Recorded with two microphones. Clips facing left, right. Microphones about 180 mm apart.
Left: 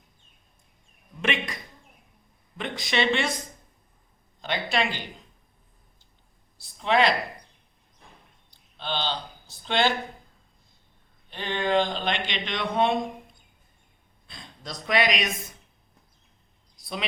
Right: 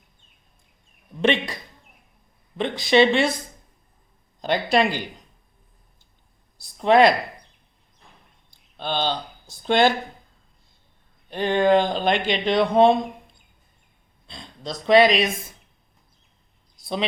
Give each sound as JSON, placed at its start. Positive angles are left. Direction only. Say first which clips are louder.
{"t": 1.2, "sound": "speech", "louder": "right 8 dB", "side_deg": -30}
{"t": 2.6, "sound": "speech", "louder": "right 10 dB", "side_deg": -30}
{"t": 4.4, "sound": "speech", "louder": "right 7 dB", "side_deg": -40}
{"t": 6.6, "sound": "speech", "louder": "right 7 dB", "side_deg": -40}
{"t": 8.8, "sound": "speech", "louder": "right 5 dB", "side_deg": -45}
{"t": 11.3, "sound": "speech", "louder": "right 8 dB", "side_deg": -45}
{"t": 14.3, "sound": "speech", "louder": "right 7 dB", "side_deg": -25}